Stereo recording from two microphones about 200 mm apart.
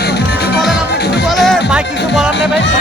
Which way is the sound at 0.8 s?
55° left (ahead or behind).